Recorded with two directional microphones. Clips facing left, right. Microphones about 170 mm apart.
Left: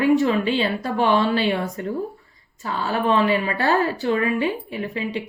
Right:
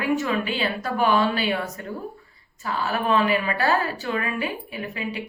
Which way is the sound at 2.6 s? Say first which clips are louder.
Left 2 dB; 30° left (ahead or behind).